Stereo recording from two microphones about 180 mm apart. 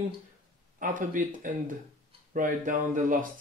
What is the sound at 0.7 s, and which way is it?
Speech, 50° right (ahead or behind).